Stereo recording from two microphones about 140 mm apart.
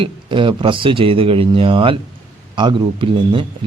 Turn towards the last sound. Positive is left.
turn(degrees=-35)  # may be behind; listen again after turning